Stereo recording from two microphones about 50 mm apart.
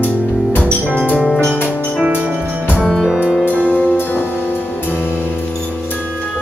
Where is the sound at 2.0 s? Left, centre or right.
Centre.